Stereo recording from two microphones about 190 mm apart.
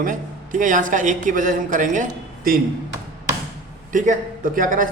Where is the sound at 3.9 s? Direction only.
45° right (ahead or behind).